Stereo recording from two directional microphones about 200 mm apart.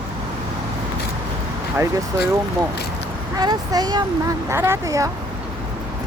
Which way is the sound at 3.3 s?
20° right (ahead or behind).